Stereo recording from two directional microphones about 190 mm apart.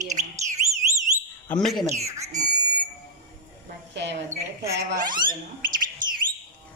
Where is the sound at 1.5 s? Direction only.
Centre (ahead or behind).